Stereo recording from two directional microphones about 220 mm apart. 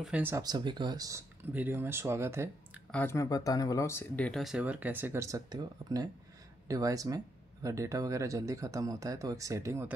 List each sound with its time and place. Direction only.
0.0 s speech: 5° right (ahead or behind)
2.9 s speech: 10° left (ahead or behind); by 9.9 s 10° right (ahead or behind)